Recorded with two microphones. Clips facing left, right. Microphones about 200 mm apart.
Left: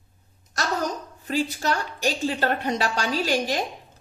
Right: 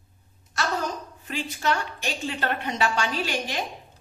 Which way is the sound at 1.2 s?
40° left (ahead or behind).